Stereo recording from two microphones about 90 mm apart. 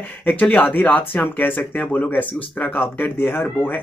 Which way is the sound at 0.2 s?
20° left (ahead or behind).